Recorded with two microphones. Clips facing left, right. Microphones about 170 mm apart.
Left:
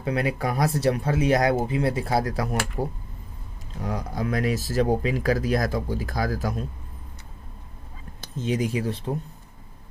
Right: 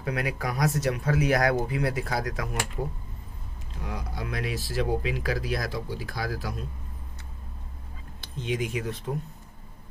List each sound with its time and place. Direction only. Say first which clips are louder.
0.0 s speech: left 5 dB; 25° left (ahead or behind); by 6.5 s 45° left (ahead or behind)
8.2 s speech: left 4 dB; 40° left (ahead or behind)